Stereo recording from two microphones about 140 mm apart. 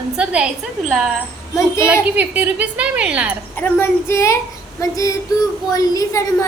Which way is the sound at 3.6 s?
15° left (ahead or behind).